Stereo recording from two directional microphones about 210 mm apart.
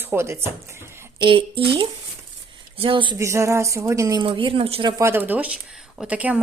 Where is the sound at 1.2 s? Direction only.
25° right (ahead or behind).